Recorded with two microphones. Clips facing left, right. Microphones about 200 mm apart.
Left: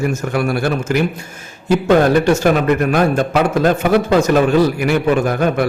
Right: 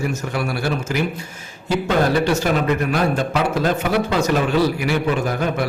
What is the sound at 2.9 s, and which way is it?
Speech, 50° left (ahead or behind).